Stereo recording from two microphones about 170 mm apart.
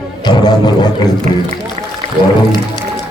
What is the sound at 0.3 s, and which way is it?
Music, 25° left (ahead or behind).